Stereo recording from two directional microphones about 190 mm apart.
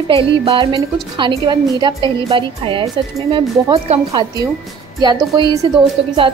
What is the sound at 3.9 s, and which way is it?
A woman's voice, 20° right (ahead or behind).